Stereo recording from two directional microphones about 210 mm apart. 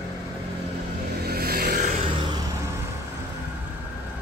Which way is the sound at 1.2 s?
45° right (ahead or behind).